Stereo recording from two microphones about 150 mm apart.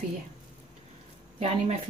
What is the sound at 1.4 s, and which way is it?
Speech, 45° right (ahead or behind).